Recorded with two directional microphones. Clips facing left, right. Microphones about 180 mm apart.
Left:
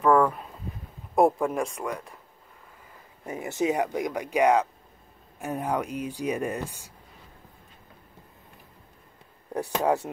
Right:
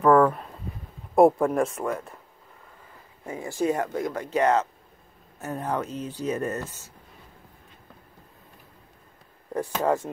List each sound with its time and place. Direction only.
0.0 s a sound: 5° right (ahead or behind)
1.1 s speech: centre (ahead or behind)
3.3 s speech: 20° left (ahead or behind)
9.5 s speech: 10° left (ahead or behind)